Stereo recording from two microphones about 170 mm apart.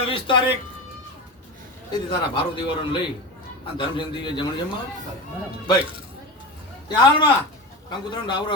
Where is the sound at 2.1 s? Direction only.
30° left (ahead or behind).